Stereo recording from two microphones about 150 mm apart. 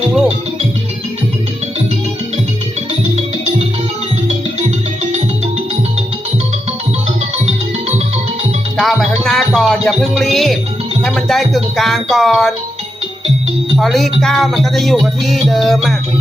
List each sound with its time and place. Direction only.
7.4 s music: 45° right (ahead or behind)
8.8 s music: centre (ahead or behind)
9.5 s speech: centre (ahead or behind)
13.7 s speech: centre (ahead or behind)